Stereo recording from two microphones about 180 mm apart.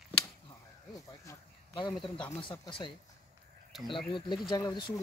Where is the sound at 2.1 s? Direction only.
25° left (ahead or behind).